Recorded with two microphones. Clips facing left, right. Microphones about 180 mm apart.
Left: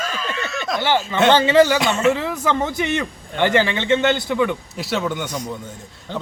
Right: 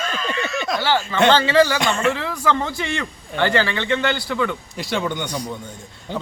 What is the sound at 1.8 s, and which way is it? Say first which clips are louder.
Speech: left 3 dB; 5° left (ahead or behind).